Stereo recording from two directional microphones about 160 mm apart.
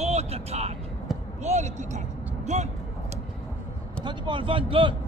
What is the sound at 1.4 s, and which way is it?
Speech, 45° right (ahead or behind).